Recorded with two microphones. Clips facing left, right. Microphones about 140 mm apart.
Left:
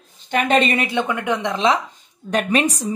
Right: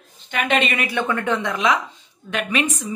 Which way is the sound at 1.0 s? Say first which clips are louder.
Even; 15° left (ahead or behind).